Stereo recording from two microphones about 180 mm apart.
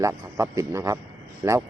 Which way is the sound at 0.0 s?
15° right (ahead or behind).